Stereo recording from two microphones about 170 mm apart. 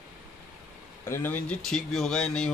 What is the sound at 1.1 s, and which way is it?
A man's voice, 10° left (ahead or behind).